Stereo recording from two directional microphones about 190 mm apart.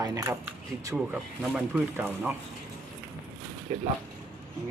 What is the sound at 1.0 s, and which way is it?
Speech, centre (ahead or behind).